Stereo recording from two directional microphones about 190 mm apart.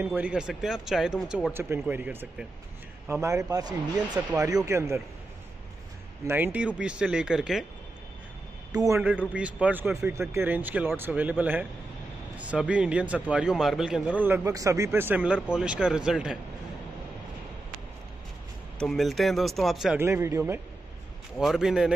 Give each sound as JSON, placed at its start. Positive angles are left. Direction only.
{"t": 0.0, "sound": "speech", "side_deg": -10}
{"t": 1.5, "sound": "a man's voice", "side_deg": -10}
{"t": 6.2, "sound": "speech", "side_deg": -10}
{"t": 8.7, "sound": "a man's voice", "side_deg": -15}
{"t": 18.8, "sound": "speech", "side_deg": 0}
{"t": 20.0, "sound": "a man's voice", "side_deg": -15}
{"t": 21.4, "sound": "speech", "side_deg": 0}